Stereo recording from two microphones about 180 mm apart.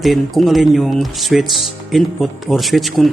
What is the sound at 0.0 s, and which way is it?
Speech, centre (ahead or behind).